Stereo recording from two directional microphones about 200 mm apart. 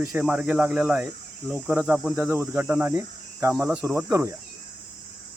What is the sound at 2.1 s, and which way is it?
Cricket, 10° right (ahead or behind).